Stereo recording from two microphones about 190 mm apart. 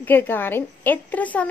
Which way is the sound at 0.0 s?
10° left (ahead or behind).